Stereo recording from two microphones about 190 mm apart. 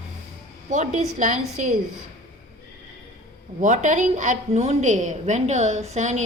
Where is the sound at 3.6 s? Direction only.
40° right (ahead or behind).